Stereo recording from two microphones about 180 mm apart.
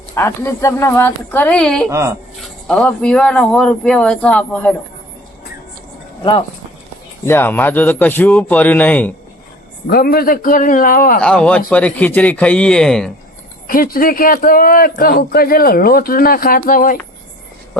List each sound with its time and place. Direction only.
0.2 s a man's voice: 15° left (ahead or behind)
1.9 s speech: 15° right (ahead or behind)
2.6 s speech: 5° left (ahead or behind)
7.3 s a man's voice: 10° left (ahead or behind)
9.8 s a man's voice: 60° left (ahead or behind)
11.2 s a man's voice: 5° left (ahead or behind)
13.7 s a man's voice: 50° left (ahead or behind)